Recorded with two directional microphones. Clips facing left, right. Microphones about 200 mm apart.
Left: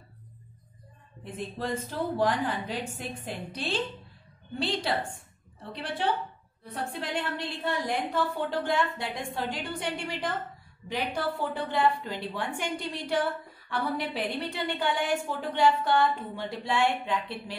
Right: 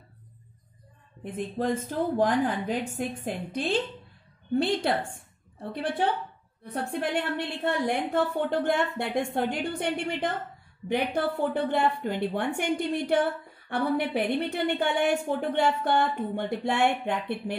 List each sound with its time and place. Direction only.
1.2 s a woman's voice: 50° right (ahead or behind)